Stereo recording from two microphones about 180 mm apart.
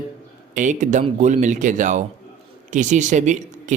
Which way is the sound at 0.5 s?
45° right (ahead or behind).